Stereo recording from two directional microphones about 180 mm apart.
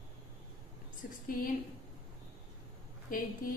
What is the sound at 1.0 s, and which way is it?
Speech, 50° left (ahead or behind).